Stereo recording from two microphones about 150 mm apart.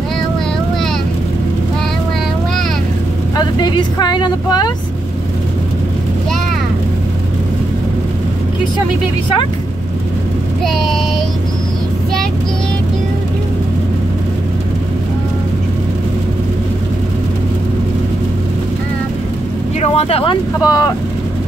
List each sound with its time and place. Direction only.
3.3 s speech: 30° left (ahead or behind)
10.6 s child singing: centre (ahead or behind)
19.8 s vehicle: 40° left (ahead or behind)
20.6 s speech: 25° left (ahead or behind)